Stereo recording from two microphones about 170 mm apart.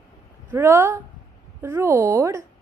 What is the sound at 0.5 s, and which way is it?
Speech, 15° right (ahead or behind).